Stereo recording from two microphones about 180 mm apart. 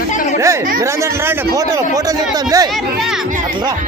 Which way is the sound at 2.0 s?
20° right (ahead or behind).